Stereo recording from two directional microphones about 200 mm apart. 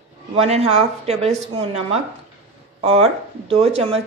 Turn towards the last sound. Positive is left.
turn(degrees=-30)  # may be behind; listen again after turning